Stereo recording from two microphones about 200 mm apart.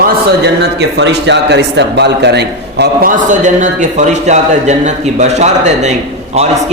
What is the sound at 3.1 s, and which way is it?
A man's voice, 40° right (ahead or behind).